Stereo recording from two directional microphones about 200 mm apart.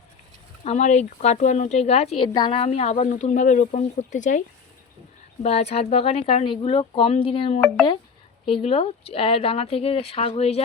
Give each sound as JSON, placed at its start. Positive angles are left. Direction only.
{"t": 0.6, "sound": "speech", "side_deg": 35}